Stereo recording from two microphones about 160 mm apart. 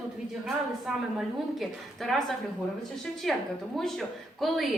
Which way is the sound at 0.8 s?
Centre (ahead or behind).